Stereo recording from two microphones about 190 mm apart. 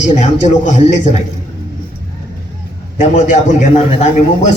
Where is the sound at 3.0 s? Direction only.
40° left (ahead or behind).